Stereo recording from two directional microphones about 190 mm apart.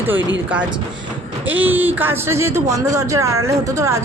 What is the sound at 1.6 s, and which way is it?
Speech, 10° right (ahead or behind).